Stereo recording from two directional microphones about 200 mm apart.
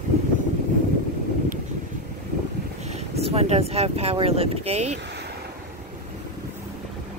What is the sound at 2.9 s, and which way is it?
Speech, 30° right (ahead or behind).